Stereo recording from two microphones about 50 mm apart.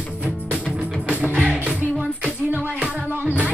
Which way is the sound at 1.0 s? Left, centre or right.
Right.